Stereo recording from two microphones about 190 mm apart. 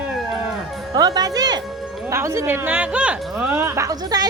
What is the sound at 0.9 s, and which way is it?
A woman's voice, 20° right (ahead or behind).